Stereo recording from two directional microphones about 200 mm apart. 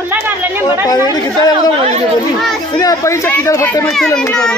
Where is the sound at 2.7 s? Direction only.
15° left (ahead or behind).